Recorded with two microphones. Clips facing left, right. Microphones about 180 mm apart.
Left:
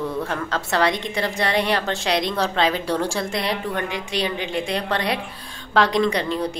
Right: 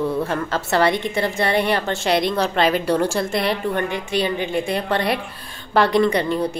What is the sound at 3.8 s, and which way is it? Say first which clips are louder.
Speech: right 4 dB; 55° right (ahead or behind).